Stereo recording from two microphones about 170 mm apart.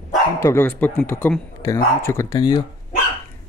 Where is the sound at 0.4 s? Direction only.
15° left (ahead or behind).